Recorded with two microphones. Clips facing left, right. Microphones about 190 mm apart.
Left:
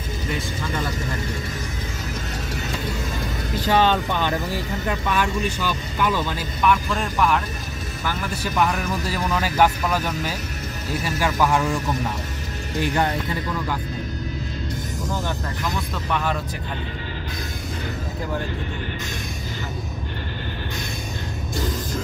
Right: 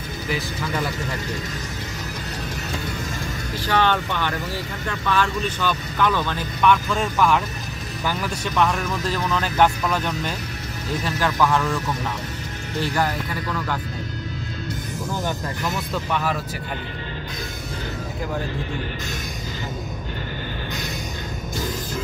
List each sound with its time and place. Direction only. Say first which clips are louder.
3.6 s speech: left 2 dB; 15° left (ahead or behind)
12.8 s speech: left 1 dB; 20° left (ahead or behind)
16.1 s speech: left 1 dB; 5° right (ahead or behind)